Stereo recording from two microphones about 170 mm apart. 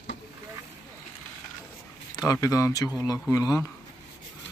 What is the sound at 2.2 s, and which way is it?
Speech, 20° left (ahead or behind).